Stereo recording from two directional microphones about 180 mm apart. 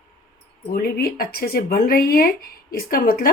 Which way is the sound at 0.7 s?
55° left (ahead or behind).